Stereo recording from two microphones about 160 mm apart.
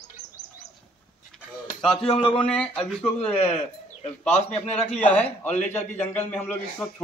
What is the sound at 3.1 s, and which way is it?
A man's voice, 40° left (ahead or behind).